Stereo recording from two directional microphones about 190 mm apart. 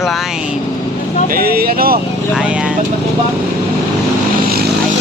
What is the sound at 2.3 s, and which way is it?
Speech, 5° right (ahead or behind).